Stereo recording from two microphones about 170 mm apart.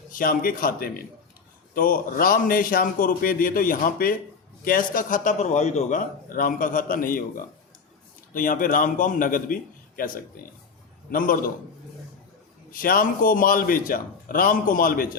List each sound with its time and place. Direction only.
0.1 s a man's voice: 55° left (ahead or behind)
12.7 s a man's voice: 55° left (ahead or behind)